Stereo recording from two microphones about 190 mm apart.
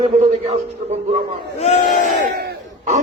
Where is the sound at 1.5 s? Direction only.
40° left (ahead or behind).